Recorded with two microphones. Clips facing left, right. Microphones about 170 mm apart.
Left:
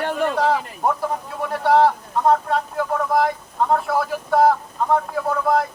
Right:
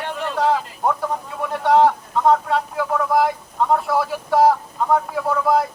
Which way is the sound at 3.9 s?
Centre (ahead or behind).